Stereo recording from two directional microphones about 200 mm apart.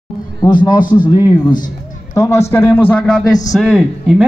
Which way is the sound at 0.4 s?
20° left (ahead or behind).